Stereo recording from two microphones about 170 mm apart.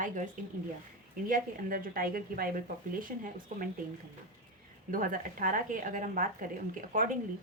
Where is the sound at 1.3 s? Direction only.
55° right (ahead or behind).